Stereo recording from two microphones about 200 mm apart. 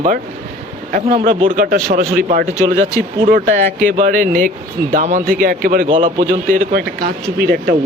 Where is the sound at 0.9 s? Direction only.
35° right (ahead or behind).